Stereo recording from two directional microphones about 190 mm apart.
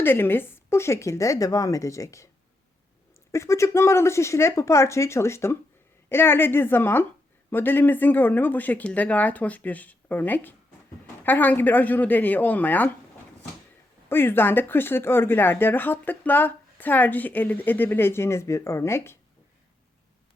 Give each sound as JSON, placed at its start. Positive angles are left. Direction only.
{"t": 0.0, "sound": "speech", "side_deg": 10}
{"t": 3.3, "sound": "speech", "side_deg": 15}
{"t": 14.1, "sound": "speech", "side_deg": 10}